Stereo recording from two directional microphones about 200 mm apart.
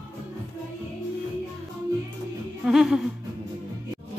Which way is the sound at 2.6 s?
Centre (ahead or behind).